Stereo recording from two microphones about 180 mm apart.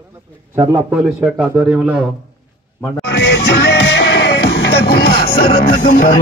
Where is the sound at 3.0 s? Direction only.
70° left (ahead or behind); by 5.5 s 55° left (ahead or behind).